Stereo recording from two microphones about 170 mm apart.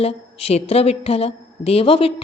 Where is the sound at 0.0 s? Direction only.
35° left (ahead or behind).